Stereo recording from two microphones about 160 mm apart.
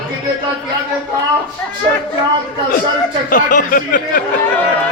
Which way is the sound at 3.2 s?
55° left (ahead or behind).